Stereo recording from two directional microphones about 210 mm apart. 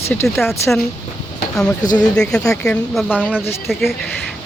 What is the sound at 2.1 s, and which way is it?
Speech, 5° left (ahead or behind).